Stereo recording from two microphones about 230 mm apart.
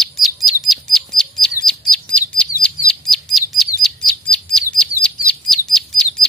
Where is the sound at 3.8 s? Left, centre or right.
Centre.